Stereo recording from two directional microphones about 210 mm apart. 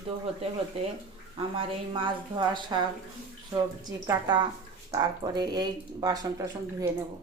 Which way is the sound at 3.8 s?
20° right (ahead or behind).